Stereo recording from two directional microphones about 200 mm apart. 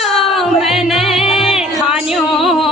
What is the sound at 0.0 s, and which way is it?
Music, centre (ahead or behind).